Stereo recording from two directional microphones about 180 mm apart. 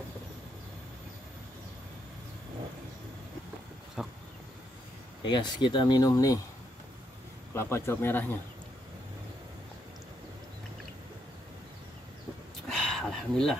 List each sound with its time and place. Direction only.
5.2 s speech: 25° left (ahead or behind)
7.5 s speech: 15° left (ahead or behind)
12.6 s a sound: centre (ahead or behind)